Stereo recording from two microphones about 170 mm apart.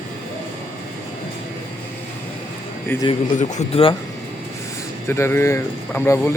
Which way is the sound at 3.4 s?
45° left (ahead or behind).